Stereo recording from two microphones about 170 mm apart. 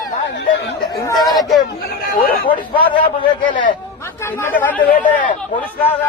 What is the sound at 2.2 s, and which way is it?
Speech, 60° left (ahead or behind).